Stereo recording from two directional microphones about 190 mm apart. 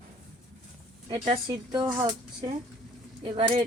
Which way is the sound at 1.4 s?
20° right (ahead or behind).